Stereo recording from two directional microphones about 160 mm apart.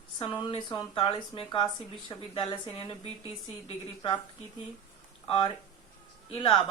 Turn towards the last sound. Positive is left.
turn(degrees=35)  # may be behind; listen again after turning